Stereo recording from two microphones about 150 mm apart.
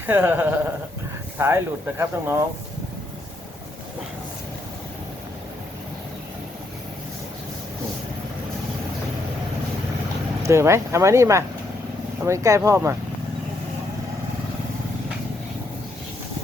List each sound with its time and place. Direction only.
0.0 s speech: 10° right (ahead or behind)
10.4 s speech: 20° right (ahead or behind)